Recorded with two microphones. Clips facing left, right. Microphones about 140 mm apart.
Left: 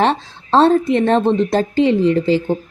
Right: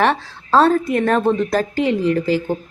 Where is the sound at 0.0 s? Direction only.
25° left (ahead or behind).